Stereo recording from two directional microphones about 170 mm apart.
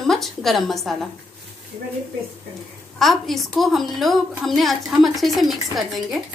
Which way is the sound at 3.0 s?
Centre (ahead or behind).